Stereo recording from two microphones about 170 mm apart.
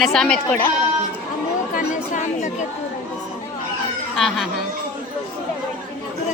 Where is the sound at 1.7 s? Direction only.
45° left (ahead or behind).